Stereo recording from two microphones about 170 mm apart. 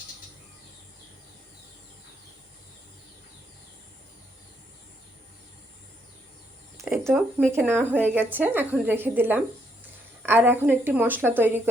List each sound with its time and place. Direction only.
6.8 s speech: 10° right (ahead or behind)